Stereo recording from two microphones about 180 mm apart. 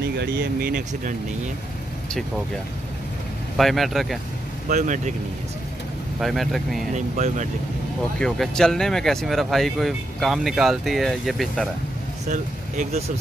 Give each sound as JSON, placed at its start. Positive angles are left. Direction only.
{"t": 0.0, "sound": "speech", "side_deg": -60}
{"t": 3.5, "sound": "speech", "side_deg": 0}
{"t": 4.6, "sound": "speech", "side_deg": -45}
{"t": 6.1, "sound": "speech", "side_deg": 0}
{"t": 7.0, "sound": "speech", "side_deg": -40}
{"t": 8.2, "sound": "speech", "side_deg": 5}
{"t": 12.3, "sound": "speech", "side_deg": -40}